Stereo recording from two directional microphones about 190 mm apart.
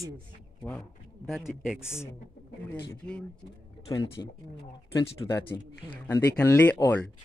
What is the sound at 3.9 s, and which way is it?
Speech, 20° left (ahead or behind).